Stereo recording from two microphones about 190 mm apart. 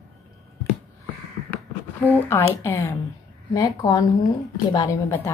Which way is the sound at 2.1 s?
15° left (ahead or behind).